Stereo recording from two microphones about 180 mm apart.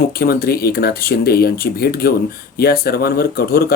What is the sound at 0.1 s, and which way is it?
Speech, 55° left (ahead or behind).